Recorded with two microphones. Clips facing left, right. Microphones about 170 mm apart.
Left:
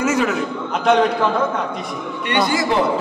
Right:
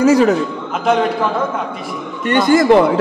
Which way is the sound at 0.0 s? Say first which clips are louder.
Right 7 dB; 35° right (ahead or behind).